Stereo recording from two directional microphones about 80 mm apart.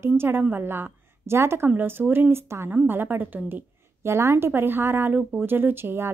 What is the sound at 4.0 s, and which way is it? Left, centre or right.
Speech, right.